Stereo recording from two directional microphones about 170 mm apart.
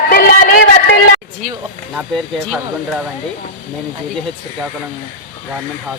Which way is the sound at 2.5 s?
5° left (ahead or behind).